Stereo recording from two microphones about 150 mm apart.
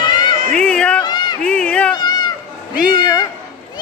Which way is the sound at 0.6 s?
5° left (ahead or behind).